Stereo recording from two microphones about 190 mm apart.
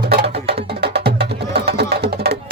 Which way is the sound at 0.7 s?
60° right (ahead or behind).